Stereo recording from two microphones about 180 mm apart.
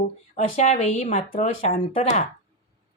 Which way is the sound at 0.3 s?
50° left (ahead or behind).